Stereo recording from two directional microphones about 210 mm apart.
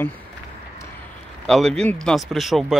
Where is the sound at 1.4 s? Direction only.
Centre (ahead or behind).